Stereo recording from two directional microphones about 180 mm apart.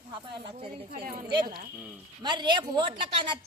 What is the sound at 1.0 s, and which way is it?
Speech, 55° right (ahead or behind).